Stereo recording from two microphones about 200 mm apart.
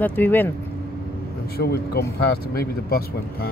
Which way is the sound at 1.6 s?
55° left (ahead or behind).